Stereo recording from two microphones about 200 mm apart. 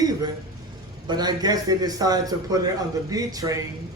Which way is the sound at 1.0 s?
20° right (ahead or behind).